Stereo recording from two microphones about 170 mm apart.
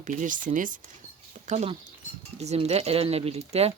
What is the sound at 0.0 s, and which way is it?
Speech, 50° right (ahead or behind).